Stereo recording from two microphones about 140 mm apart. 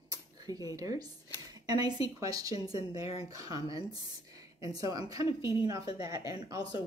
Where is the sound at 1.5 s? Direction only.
30° right (ahead or behind).